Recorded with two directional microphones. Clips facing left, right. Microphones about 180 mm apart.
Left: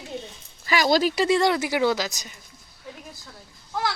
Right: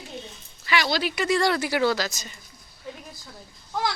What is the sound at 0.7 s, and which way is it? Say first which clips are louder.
Speech: left 4 dB; 45° left (ahead or behind).